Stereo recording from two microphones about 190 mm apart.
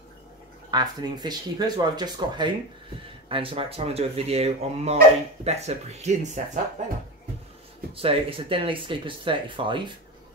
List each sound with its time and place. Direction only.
0.7 s speech: 20° right (ahead or behind); by 6.6 s 35° right (ahead or behind)
7.9 s speech: 30° right (ahead or behind)